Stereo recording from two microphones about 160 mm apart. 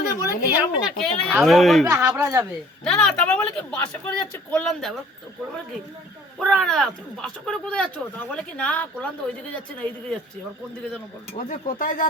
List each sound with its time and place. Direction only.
0.2 s a sound: 15° right (ahead or behind)
0.9 s speech: 5° left (ahead or behind)
1.8 s speech: 20° right (ahead or behind)
2.8 s speech: 5° left (ahead or behind)
6.4 s speech: 5° left (ahead or behind)
11.3 s speech: 50° left (ahead or behind)